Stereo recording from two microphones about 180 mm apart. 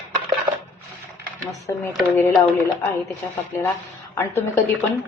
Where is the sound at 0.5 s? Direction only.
25° right (ahead or behind).